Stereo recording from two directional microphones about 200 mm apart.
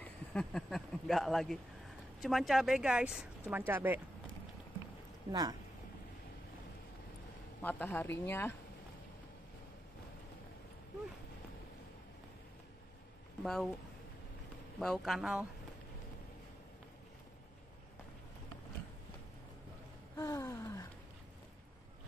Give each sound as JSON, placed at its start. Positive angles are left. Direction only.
{"t": 0.0, "sound": "speech", "side_deg": 5}
{"t": 5.3, "sound": "speech", "side_deg": -20}
{"t": 7.6, "sound": "speech", "side_deg": 10}
{"t": 13.4, "sound": "speech", "side_deg": 0}
{"t": 14.8, "sound": "speech", "side_deg": 0}
{"t": 20.2, "sound": "gasp", "side_deg": 15}